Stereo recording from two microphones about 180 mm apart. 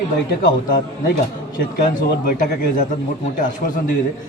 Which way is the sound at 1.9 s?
50° left (ahead or behind).